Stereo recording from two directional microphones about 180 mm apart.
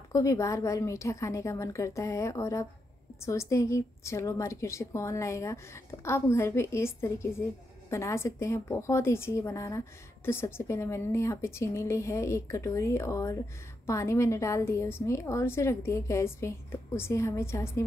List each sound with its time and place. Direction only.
0.1 s a woman's voice: 15° left (ahead or behind)